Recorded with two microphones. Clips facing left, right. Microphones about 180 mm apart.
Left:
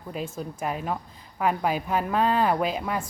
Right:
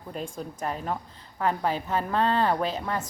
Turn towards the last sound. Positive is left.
turn(degrees=10)  # may be behind; listen again after turning